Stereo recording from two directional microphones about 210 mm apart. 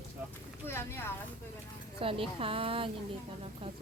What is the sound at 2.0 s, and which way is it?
Speech, 25° right (ahead or behind).